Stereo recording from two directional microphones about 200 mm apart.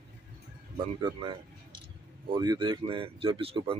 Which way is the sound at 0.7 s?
25° right (ahead or behind).